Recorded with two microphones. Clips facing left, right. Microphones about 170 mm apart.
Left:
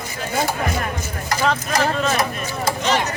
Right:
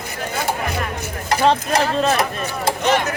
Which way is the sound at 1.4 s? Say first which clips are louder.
Right 3 dB; 30° right (ahead or behind).